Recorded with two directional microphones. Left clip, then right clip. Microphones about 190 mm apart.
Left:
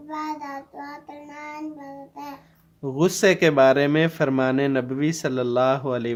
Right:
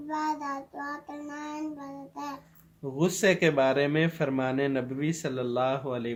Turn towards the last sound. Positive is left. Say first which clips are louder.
# left 7 dB
turn(degrees=45)  # may be behind; listen again after turning